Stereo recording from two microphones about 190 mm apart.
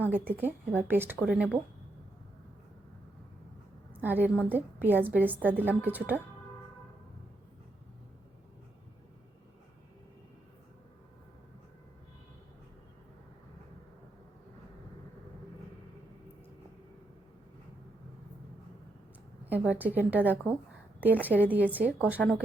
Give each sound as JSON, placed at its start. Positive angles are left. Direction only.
{"t": 0.0, "sound": "a woman's voice", "side_deg": -10}
{"t": 4.0, "sound": "a woman's voice", "side_deg": -10}
{"t": 19.5, "sound": "a woman's voice", "side_deg": -10}